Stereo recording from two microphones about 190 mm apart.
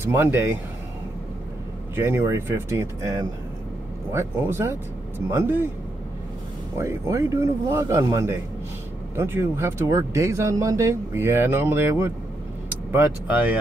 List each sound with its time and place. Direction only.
0.0 s speech: 10° right (ahead or behind)
2.0 s speech: 15° right (ahead or behind)
6.8 s speech: 15° right (ahead or behind)